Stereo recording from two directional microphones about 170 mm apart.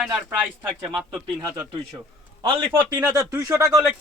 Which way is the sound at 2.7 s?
25° right (ahead or behind).